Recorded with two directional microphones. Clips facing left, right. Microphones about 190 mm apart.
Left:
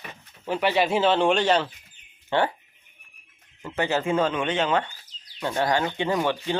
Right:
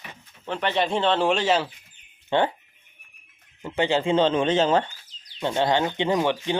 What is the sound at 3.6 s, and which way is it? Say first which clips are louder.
Speech: right 2 dB; 20° right (ahead or behind).